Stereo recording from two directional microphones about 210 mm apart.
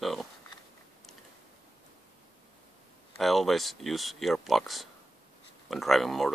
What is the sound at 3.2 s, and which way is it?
Speech, centre (ahead or behind).